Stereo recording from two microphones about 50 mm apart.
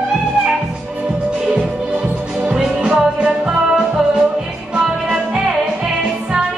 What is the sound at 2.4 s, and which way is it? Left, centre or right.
Music, centre.